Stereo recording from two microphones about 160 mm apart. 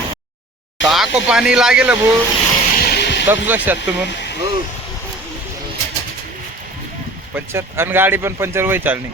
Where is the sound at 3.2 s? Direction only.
15° right (ahead or behind).